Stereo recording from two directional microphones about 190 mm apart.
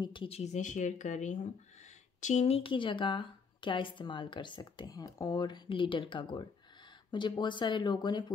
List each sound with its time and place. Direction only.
0.0 s speech: 25° left (ahead or behind)